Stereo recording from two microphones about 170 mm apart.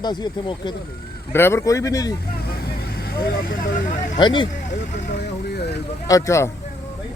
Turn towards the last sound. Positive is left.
turn(degrees=15)  # may be behind; listen again after turning